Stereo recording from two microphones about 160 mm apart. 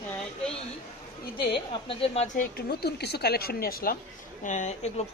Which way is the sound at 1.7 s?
35° left (ahead or behind).